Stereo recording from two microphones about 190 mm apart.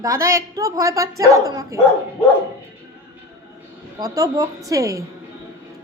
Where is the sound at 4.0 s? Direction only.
20° right (ahead or behind).